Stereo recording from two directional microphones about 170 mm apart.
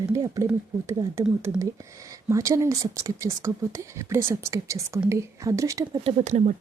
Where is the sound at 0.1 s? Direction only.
20° right (ahead or behind).